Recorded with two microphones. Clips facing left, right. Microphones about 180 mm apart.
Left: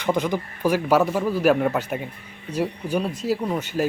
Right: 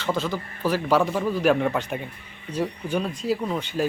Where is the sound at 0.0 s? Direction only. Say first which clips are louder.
Left 3 dB; 15° left (ahead or behind).